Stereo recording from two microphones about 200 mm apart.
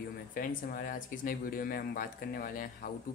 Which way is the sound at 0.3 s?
45° left (ahead or behind).